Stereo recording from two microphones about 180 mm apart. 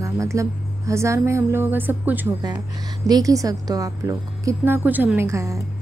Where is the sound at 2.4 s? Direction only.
20° right (ahead or behind).